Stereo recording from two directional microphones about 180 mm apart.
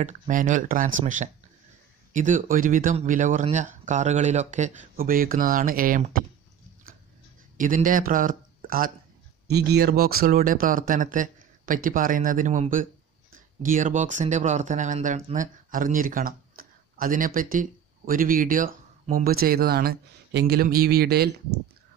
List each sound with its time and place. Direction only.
0.0 s speech: 45° right (ahead or behind)
7.5 s speech: 50° right (ahead or behind)
9.5 s speech: 65° right (ahead or behind)